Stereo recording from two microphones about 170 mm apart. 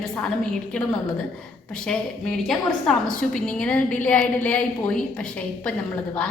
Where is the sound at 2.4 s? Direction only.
5° left (ahead or behind).